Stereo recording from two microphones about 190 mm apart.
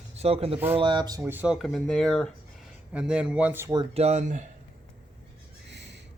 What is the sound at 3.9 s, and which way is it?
Speech, 35° right (ahead or behind).